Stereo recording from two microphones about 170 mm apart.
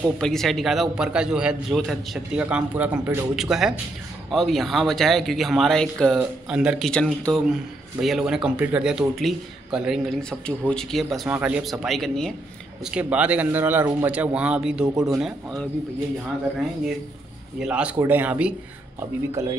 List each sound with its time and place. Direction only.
0.2 s a man's voice: centre (ahead or behind)
17.6 s a man's voice: 5° right (ahead or behind)